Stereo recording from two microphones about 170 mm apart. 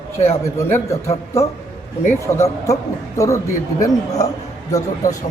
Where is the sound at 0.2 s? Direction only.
15° left (ahead or behind).